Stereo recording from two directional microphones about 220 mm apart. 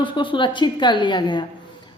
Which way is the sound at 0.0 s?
20° left (ahead or behind).